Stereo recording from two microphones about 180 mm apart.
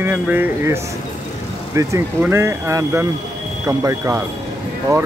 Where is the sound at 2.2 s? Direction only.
15° right (ahead or behind).